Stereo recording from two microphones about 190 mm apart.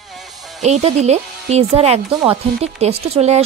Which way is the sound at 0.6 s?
35° right (ahead or behind).